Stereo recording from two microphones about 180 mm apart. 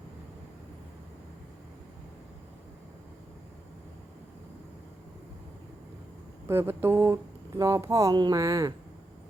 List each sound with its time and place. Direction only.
6.5 s speech: 15° right (ahead or behind)